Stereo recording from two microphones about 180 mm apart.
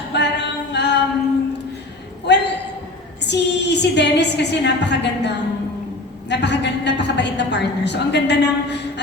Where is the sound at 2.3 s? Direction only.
70° left (ahead or behind).